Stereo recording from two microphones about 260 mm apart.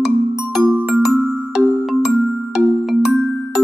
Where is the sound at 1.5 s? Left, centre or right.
Centre.